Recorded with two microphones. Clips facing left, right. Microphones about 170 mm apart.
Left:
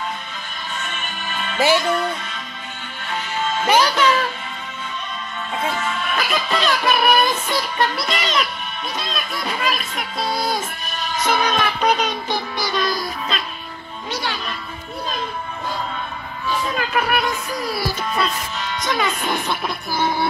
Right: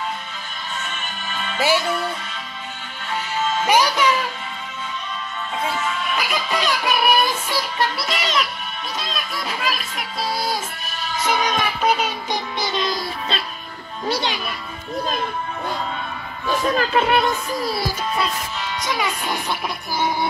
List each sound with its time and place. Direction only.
1.6 s music: 5° right (ahead or behind)
3.6 s music: 10° right (ahead or behind)
6.1 s music: 10° right (ahead or behind)
11.2 s music: 15° right (ahead or behind)
12.5 s music: 20° right (ahead or behind)
16.9 s speech: 25° right (ahead or behind)
18.1 s speech: 10° right (ahead or behind)
20.0 s music: 10° right (ahead or behind)